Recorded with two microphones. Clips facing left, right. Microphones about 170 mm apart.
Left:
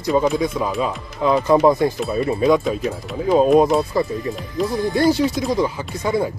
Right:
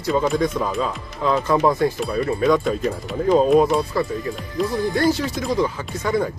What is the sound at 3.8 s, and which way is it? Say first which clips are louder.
Speech: left 2 dB; 20° left (ahead or behind).